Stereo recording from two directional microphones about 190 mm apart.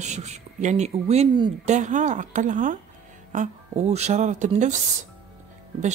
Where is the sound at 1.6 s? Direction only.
40° right (ahead or behind).